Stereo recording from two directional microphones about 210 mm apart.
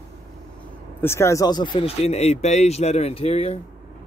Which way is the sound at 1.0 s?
15° left (ahead or behind).